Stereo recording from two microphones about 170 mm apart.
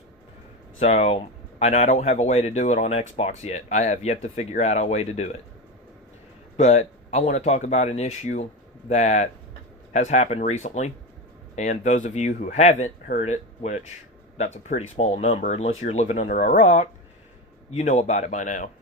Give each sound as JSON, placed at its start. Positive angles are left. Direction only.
{"t": 0.8, "sound": "speech", "side_deg": 40}
{"t": 6.6, "sound": "speech", "side_deg": 40}
{"t": 15.4, "sound": "speech", "side_deg": 50}